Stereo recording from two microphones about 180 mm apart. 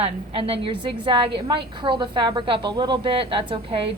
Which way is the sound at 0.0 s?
30° right (ahead or behind).